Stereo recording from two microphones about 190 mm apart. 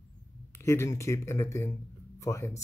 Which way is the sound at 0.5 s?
15° left (ahead or behind).